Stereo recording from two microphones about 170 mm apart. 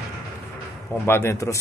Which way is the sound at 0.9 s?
15° left (ahead or behind).